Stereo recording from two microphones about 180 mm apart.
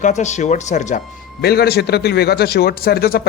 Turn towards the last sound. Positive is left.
turn(degrees=60)  # may be behind; listen again after turning